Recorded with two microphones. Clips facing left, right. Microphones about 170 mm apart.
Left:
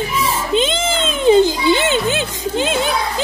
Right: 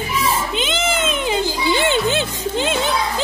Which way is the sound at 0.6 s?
25° left (ahead or behind).